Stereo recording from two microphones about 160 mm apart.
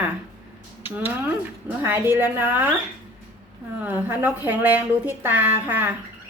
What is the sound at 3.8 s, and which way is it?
A woman's voice, 10° right (ahead or behind).